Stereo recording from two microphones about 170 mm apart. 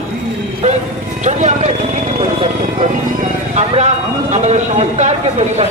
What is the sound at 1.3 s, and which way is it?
Speech, 45° right (ahead or behind).